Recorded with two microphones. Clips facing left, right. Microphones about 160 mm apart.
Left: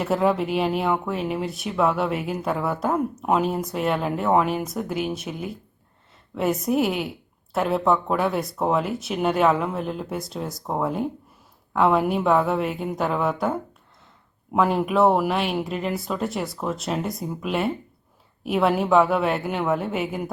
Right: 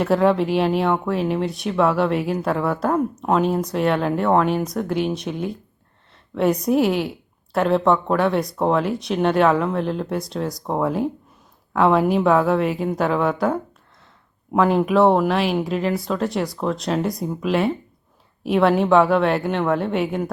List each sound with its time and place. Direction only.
0.0 s speech: centre (ahead or behind)